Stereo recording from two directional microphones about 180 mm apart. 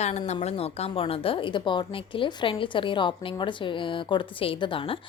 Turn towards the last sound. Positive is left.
turn(degrees=30)  # may be behind; listen again after turning